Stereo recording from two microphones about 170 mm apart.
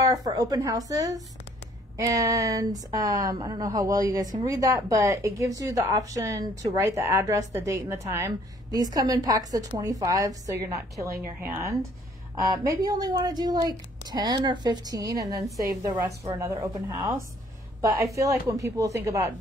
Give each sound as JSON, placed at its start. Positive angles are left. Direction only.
{"t": 0.0, "sound": "speech", "side_deg": -20}